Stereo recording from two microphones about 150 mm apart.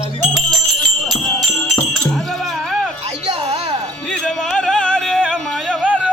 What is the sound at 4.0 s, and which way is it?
Music, 5° left (ahead or behind).